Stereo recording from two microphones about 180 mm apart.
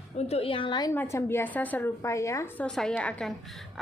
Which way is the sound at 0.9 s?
15° left (ahead or behind).